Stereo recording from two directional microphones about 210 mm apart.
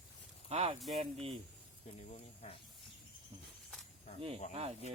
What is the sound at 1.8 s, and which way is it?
Speech, 30° left (ahead or behind).